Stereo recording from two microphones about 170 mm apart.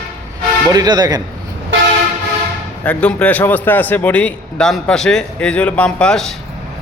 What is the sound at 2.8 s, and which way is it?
A man's voice, 5° left (ahead or behind).